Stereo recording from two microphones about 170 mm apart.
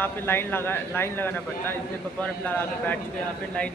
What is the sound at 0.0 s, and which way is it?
A man's voice, 10° left (ahead or behind).